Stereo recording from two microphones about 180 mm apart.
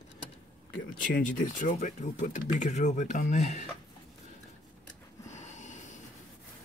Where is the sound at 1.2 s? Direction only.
45° left (ahead or behind).